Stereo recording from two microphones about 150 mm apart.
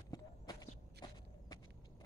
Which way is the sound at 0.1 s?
25° left (ahead or behind).